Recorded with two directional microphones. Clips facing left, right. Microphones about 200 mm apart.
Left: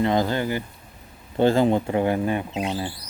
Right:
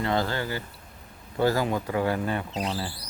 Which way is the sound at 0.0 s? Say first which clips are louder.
Left 5 dB; 20° left (ahead or behind).